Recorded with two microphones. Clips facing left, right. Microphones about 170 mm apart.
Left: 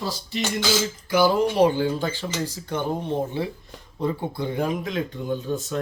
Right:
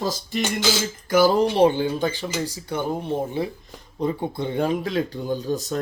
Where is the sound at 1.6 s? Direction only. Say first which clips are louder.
Right 1 dB; 20° right (ahead or behind).